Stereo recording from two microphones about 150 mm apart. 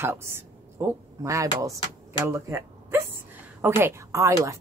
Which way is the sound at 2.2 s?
20° right (ahead or behind).